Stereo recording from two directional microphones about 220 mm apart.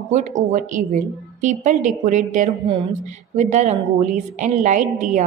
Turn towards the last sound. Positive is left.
turn(degrees=-35)  # may be behind; listen again after turning